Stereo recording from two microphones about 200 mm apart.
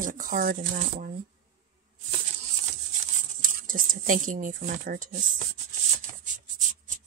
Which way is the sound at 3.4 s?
45° right (ahead or behind).